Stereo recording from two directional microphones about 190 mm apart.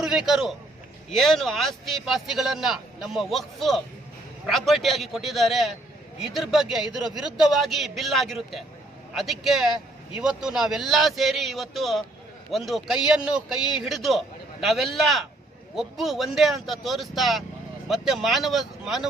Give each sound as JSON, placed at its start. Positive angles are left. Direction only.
{"t": 0.0, "sound": "a man's voice", "side_deg": -5}